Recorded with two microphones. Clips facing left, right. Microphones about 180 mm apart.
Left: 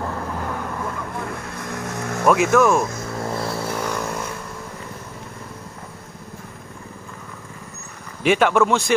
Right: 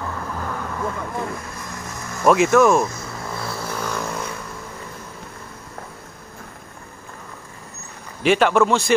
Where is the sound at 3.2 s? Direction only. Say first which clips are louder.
Left 4 dB; 35° left (ahead or behind).